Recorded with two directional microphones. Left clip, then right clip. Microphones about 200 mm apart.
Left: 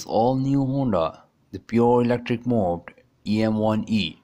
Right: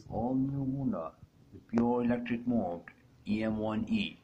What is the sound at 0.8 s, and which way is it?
Speech, 50° left (ahead or behind).